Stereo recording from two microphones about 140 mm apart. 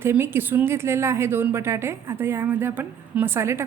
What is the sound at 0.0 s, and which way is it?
A woman's voice, 15° right (ahead or behind).